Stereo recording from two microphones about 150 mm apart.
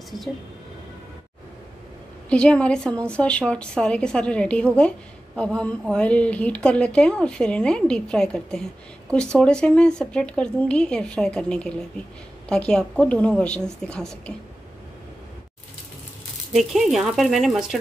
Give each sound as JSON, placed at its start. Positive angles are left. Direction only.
{"t": 2.2, "sound": "a woman's voice", "side_deg": 5}
{"t": 16.5, "sound": "a woman's voice", "side_deg": 0}